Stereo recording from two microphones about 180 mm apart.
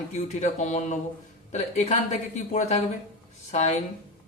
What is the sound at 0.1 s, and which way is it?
Speech, 40° left (ahead or behind).